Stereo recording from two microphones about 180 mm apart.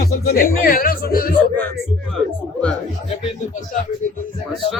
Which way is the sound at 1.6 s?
10° left (ahead or behind).